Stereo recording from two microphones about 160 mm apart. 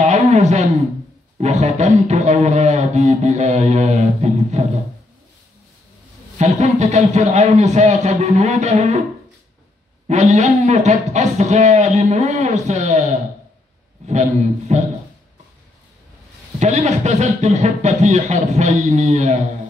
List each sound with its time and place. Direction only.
0.0 s a sound: 45° right (ahead or behind)
1.4 s a man's voice: 45° right (ahead or behind)
6.3 s a man's voice: 45° right (ahead or behind)
10.0 s a man's voice: 45° right (ahead or behind)
14.7 s a man's voice: 45° right (ahead or behind)
16.5 s a man's voice: 45° right (ahead or behind)